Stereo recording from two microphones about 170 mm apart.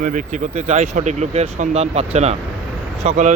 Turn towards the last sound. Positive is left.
turn(degrees=-40)  # may be behind; listen again after turning